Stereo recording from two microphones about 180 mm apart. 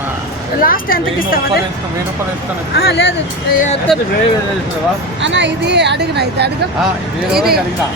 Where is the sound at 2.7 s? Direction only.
65° left (ahead or behind).